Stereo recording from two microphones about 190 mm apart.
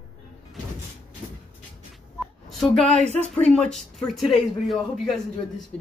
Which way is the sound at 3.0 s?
35° right (ahead or behind).